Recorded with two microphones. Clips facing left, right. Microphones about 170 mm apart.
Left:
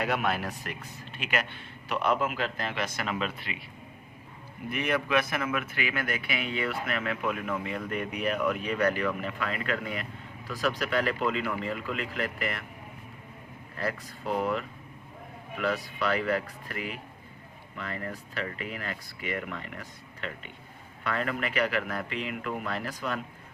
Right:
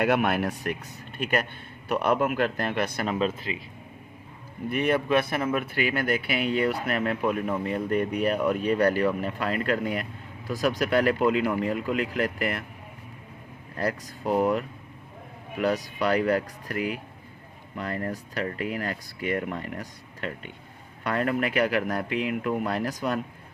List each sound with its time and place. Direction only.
0.0 s a man's voice: 60° right (ahead or behind)
1.9 s a man's voice: 55° right (ahead or behind)
3.1 s speech: 35° right (ahead or behind)
4.7 s speech: 35° right (ahead or behind)
13.7 s speech: 40° right (ahead or behind)